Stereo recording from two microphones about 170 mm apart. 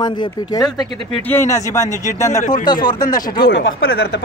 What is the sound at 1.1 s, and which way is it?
A man's voice, 10° left (ahead or behind).